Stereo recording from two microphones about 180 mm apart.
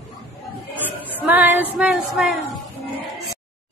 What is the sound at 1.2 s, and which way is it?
Female singing, 10° right (ahead or behind).